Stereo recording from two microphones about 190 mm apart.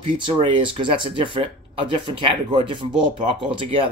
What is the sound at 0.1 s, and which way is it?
Speech, 25° right (ahead or behind).